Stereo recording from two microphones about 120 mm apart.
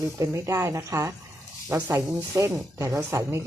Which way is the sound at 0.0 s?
25° right (ahead or behind).